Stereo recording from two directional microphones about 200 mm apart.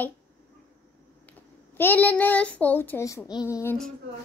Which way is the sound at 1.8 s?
10° left (ahead or behind).